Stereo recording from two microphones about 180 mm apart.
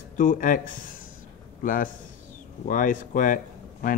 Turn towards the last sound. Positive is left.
turn(degrees=50)  # may be behind; listen again after turning